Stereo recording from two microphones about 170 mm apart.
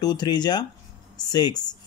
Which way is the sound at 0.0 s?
25° left (ahead or behind).